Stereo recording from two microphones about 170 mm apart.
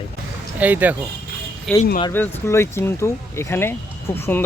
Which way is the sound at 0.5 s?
10° right (ahead or behind).